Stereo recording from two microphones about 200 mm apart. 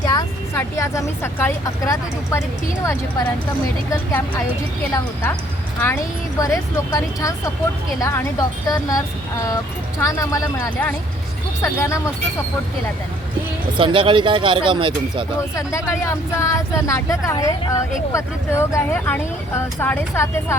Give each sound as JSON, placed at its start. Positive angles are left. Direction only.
{"t": 0.0, "sound": "speech", "side_deg": 20}
{"t": 13.7, "sound": "speech", "side_deg": -25}
{"t": 15.5, "sound": "speech", "side_deg": 15}